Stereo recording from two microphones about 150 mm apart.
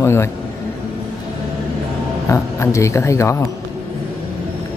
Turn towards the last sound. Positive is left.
turn(degrees=20)  # may be behind; listen again after turning